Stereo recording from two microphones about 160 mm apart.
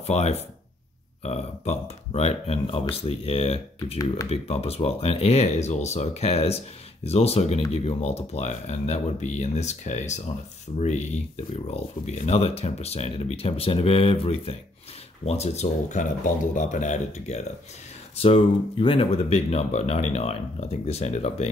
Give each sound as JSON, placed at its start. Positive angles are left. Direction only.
{"t": 0.0, "sound": "speech", "side_deg": 40}
{"t": 18.2, "sound": "speech", "side_deg": 35}